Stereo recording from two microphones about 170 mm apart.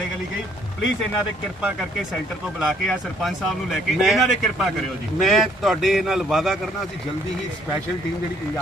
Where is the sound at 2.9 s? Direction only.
Centre (ahead or behind).